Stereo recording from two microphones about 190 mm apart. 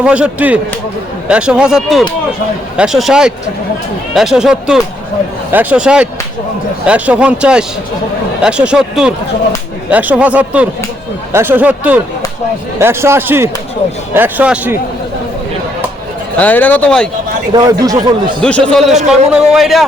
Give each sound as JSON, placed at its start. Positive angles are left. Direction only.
{"t": 0.0, "sound": "a man's voice", "side_deg": -5}
{"t": 16.4, "sound": "speech", "side_deg": 10}
{"t": 17.5, "sound": "speech", "side_deg": -20}
{"t": 18.4, "sound": "a man's voice", "side_deg": 5}